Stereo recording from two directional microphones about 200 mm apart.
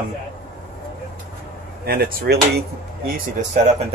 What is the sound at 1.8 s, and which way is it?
Speech, 50° right (ahead or behind).